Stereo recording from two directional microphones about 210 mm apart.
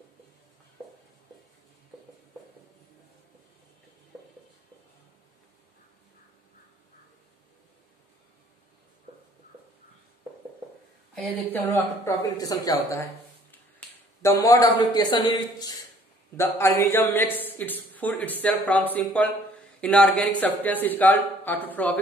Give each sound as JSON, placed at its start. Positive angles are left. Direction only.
{"t": 11.1, "sound": "a man's voice", "side_deg": 10}